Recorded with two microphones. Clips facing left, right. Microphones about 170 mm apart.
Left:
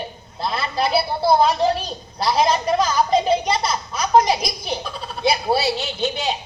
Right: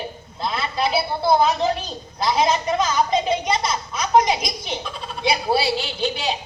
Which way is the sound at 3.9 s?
30° left (ahead or behind).